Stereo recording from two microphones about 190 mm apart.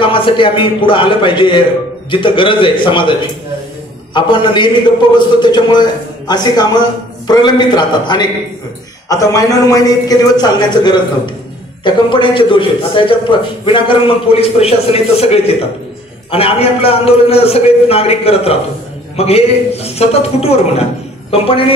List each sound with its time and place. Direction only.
0.0 s a man's voice: 25° left (ahead or behind)